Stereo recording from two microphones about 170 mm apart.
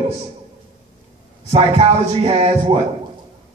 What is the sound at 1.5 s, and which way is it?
A man's voice, 35° right (ahead or behind).